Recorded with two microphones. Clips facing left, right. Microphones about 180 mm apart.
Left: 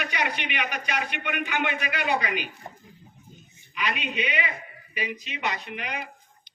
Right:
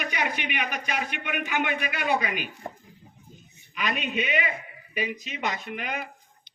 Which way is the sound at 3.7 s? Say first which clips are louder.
Right 1 dB; 45° right (ahead or behind).